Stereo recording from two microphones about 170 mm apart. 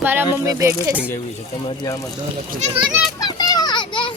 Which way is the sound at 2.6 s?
30° right (ahead or behind).